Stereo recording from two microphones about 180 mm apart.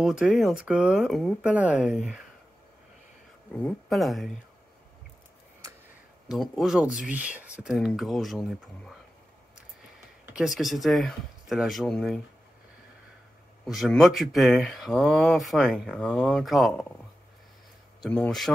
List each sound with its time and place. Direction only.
0.0 s speech: 5° right (ahead or behind)
3.5 s speech: 5° left (ahead or behind)
6.3 s speech: centre (ahead or behind)
10.2 s speech: 5° right (ahead or behind)
13.7 s speech: centre (ahead or behind)
18.0 s speech: 5° left (ahead or behind)